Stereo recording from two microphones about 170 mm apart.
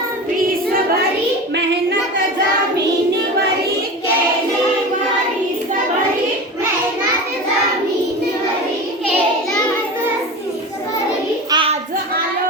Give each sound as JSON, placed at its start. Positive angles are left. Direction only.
{"t": 11.5, "sound": "child singing", "side_deg": -30}